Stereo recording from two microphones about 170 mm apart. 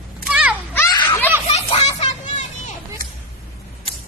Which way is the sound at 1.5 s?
35° left (ahead or behind).